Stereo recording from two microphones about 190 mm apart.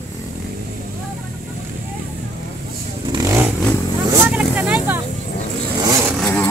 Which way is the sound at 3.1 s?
20° right (ahead or behind).